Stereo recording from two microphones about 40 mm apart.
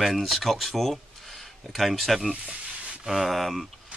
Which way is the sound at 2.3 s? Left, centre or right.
Right.